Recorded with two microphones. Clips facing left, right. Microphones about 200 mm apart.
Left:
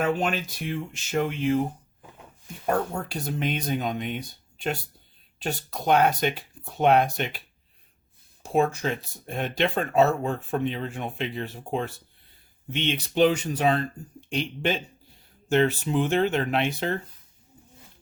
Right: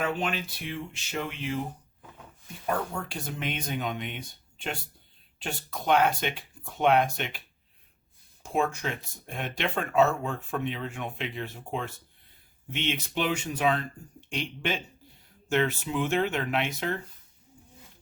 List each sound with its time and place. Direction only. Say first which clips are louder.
0.0 s speech: left 5 dB; 45° left (ahead or behind)
2.6 s speech: left 4 dB; 40° left (ahead or behind)
8.5 s speech: left 5 dB; 35° left (ahead or behind)